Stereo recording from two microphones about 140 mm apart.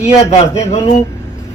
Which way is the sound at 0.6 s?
50° left (ahead or behind).